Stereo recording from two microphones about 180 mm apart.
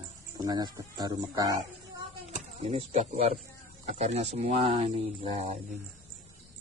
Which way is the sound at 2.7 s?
40° right (ahead or behind).